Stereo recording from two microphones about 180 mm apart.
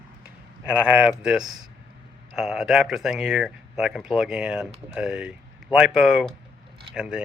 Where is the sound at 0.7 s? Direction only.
5° right (ahead or behind).